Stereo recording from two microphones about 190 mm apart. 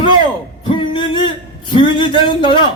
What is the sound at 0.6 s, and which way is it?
A man's voice, 25° left (ahead or behind).